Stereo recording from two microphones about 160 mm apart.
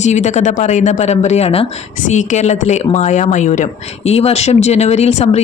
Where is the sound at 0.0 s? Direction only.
45° left (ahead or behind).